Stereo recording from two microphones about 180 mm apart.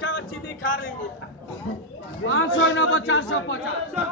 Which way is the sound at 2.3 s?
90° left.